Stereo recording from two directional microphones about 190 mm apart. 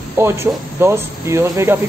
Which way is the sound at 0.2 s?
15° right (ahead or behind).